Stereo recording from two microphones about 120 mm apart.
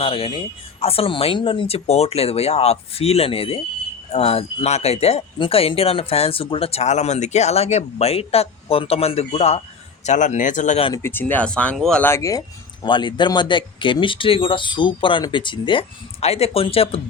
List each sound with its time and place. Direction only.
0.0 s speech: 50° left (ahead or behind)
10.0 s speech: 85° left
10.9 s speech: 20° left (ahead or behind)
12.0 s speech: 25° left (ahead or behind)
12.8 s speech: 40° left (ahead or behind)
16.2 s speech: 60° left (ahead or behind)